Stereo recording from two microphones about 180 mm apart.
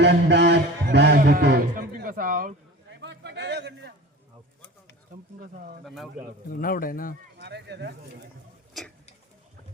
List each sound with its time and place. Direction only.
0.0 s music: 70° right (ahead or behind); by 1.9 s 55° right (ahead or behind)
2.0 s speech: 50° right (ahead or behind)
2.9 s a sound: 75° right (ahead or behind)
5.4 s speech: 55° right (ahead or behind)
5.8 s speech: centre (ahead or behind)
6.5 s a man's voice: 50° left (ahead or behind)
7.3 s speech: 70° right (ahead or behind)
8.8 s tick-tock: centre (ahead or behind)